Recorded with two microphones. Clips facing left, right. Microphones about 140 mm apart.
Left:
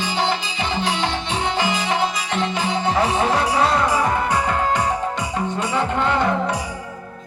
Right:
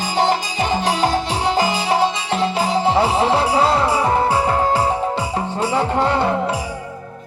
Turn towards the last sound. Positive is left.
turn(degrees=-35)  # may be behind; listen again after turning